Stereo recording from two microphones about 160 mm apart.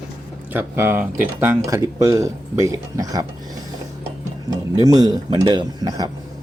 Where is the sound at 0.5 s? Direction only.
15° right (ahead or behind).